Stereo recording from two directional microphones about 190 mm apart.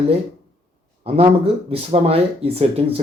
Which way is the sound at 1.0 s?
30° right (ahead or behind).